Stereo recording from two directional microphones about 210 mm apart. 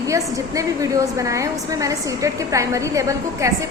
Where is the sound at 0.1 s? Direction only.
15° right (ahead or behind).